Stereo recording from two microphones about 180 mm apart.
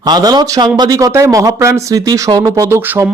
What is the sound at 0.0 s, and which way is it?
Speech, 20° right (ahead or behind).